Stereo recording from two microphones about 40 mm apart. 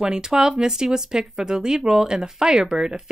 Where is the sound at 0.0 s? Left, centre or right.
Centre.